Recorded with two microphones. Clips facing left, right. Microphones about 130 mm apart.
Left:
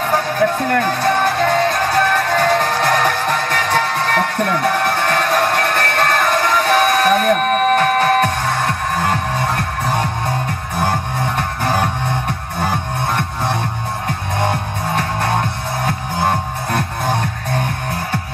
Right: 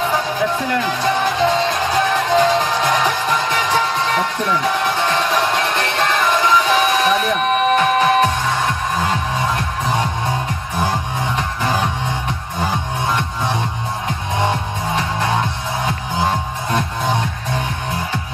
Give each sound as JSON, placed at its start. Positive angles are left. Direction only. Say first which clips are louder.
{"t": 0.0, "sound": "music", "louder": "left 2 dB", "side_deg": 55}
{"t": 15.0, "sound": "music", "louder": "left 1 dB", "side_deg": 55}